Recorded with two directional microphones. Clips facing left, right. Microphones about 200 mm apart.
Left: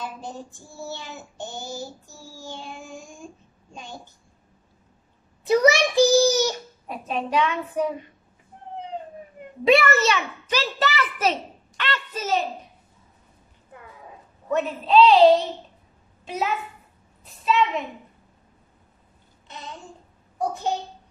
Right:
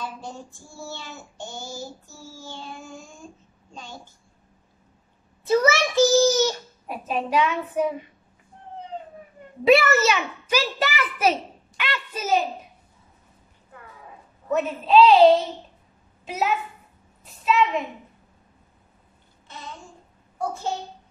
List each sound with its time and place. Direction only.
0.0 s child singing: 15° left (ahead or behind)
5.4 s child singing: 15° left (ahead or behind)
6.9 s a child's voice: 5° right (ahead or behind)
9.7 s a child's voice: 5° right (ahead or behind)
13.7 s a sound: 20° left (ahead or behind)
14.5 s a woman's voice: 5° right (ahead or behind)
17.2 s a sound: centre (ahead or behind)
19.4 s a sound: 15° left (ahead or behind)
20.3 s a child's voice: 15° left (ahead or behind)